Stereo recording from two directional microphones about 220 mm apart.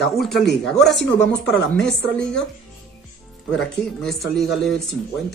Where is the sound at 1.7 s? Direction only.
5° left (ahead or behind).